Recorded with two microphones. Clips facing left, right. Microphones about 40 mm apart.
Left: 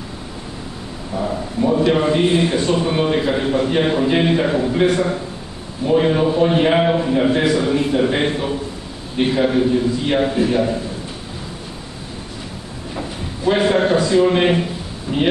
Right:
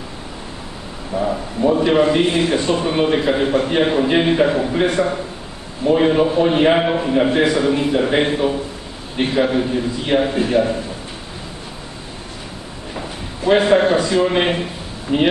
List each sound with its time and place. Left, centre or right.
1.1 s a sound: centre
2.2 s speech: centre
2.5 s a man's voice: centre
13.5 s speech: centre
15.1 s speech: right